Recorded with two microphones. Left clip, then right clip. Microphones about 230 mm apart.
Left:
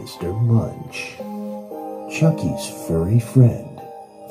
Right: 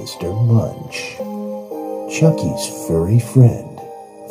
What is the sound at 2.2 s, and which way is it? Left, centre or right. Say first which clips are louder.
A woman's voice: right 5 dB; right.